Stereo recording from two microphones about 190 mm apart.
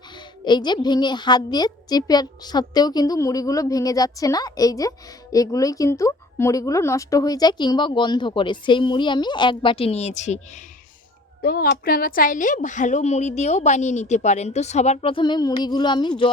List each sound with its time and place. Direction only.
0.4 s a woman's voice: 25° left (ahead or behind)
11.4 s a woman's voice: 55° left (ahead or behind); by 16.3 s 25° left (ahead or behind)